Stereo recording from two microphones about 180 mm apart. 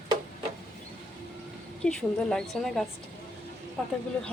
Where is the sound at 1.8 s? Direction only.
5° left (ahead or behind).